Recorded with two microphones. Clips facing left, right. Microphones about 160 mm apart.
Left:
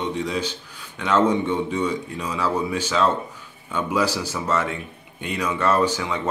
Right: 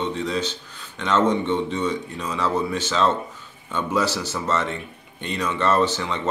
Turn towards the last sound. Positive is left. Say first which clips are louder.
# even
turn(degrees=10)  # may be behind; listen again after turning